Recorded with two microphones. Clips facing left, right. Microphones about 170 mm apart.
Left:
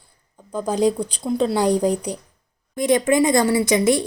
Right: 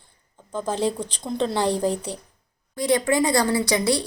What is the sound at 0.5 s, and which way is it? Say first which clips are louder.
A woman's voice: left 5 dB; 15° left (ahead or behind).